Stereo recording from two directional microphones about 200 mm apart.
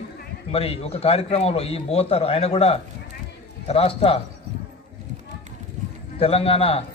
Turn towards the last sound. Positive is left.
turn(degrees=30)  # may be behind; listen again after turning